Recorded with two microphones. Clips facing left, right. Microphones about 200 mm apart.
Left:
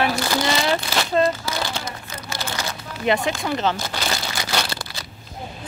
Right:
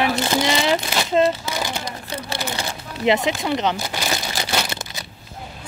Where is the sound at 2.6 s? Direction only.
25° right (ahead or behind).